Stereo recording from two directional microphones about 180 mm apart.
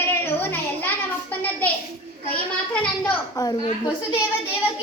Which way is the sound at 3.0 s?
25° left (ahead or behind).